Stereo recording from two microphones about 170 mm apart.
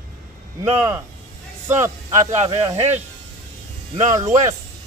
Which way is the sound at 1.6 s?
15° right (ahead or behind).